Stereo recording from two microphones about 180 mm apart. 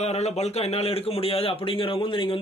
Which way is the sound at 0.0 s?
35° left (ahead or behind).